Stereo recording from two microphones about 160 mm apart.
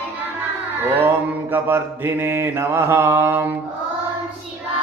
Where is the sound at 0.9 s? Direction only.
15° right (ahead or behind).